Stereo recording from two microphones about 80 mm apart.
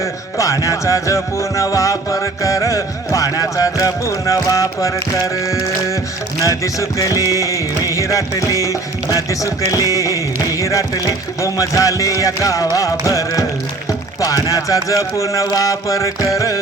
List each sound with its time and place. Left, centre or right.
0.0 s music: left
6.4 s music: left